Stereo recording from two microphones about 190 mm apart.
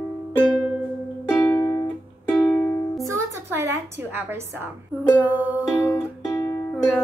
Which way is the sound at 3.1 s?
15° right (ahead or behind).